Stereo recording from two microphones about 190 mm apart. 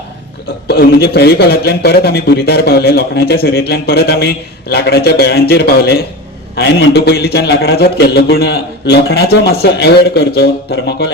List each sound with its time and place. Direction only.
0.7 s speech: 60° left (ahead or behind)